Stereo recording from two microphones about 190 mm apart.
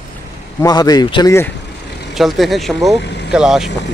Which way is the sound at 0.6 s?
20° left (ahead or behind).